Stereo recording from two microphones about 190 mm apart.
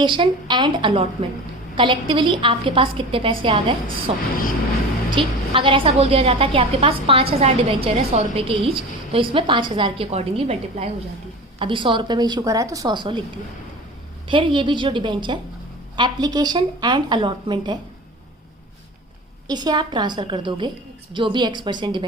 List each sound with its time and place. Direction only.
0.0 s a woman's voice: 25° right (ahead or behind)
19.5 s a woman's voice: 20° right (ahead or behind)